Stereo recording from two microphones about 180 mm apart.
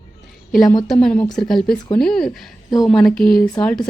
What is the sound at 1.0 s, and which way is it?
Speech, 5° left (ahead or behind).